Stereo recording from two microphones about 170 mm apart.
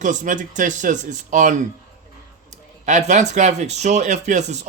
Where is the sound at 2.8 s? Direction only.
45° right (ahead or behind).